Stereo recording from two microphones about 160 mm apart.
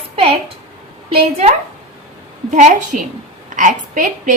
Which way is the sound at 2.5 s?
50° right (ahead or behind).